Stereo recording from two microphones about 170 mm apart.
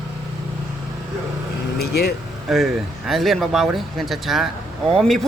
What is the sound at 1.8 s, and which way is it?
Speech, 70° left (ahead or behind).